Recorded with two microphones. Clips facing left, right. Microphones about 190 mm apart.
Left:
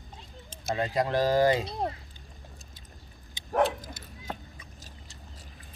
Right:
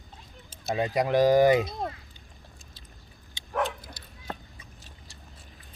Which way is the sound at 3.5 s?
40° left (ahead or behind).